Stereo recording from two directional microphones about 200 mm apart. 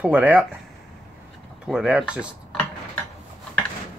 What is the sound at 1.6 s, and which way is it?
Cutlery, 5° right (ahead or behind).